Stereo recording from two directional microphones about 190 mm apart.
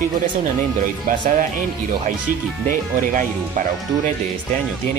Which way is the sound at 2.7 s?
45° right (ahead or behind).